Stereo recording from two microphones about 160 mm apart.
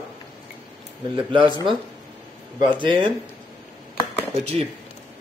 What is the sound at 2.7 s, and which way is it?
Speech, 30° right (ahead or behind).